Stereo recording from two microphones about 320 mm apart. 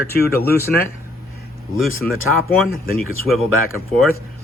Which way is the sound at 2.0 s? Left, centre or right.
Centre.